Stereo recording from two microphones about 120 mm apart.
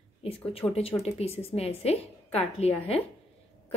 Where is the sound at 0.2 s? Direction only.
55° left (ahead or behind).